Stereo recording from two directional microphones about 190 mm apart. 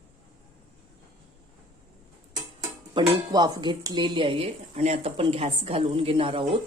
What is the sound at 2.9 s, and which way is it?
Speech, 20° right (ahead or behind).